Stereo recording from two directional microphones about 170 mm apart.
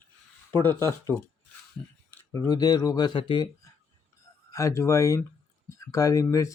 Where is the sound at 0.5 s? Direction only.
10° left (ahead or behind); by 3.5 s 30° left (ahead or behind).